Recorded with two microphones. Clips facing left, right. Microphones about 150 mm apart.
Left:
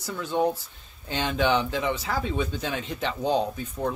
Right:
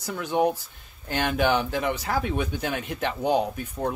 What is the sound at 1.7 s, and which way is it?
Speech, 10° right (ahead or behind).